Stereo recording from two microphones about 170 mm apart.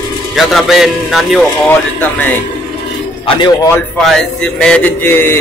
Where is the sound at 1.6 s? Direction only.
10° left (ahead or behind).